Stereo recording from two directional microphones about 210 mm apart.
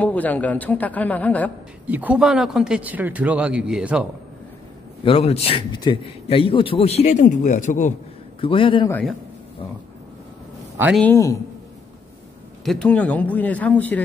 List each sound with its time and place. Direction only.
0.0 s a man's voice: 5° left (ahead or behind)
1.9 s a man's voice: 5° right (ahead or behind)
5.0 s a man's voice: 30° left (ahead or behind)
8.4 s a man's voice: 25° left (ahead or behind)
8.8 s a man's voice: 10° left (ahead or behind)
11.0 s a man's voice: 10° left (ahead or behind)
12.6 s a man's voice: 5° left (ahead or behind)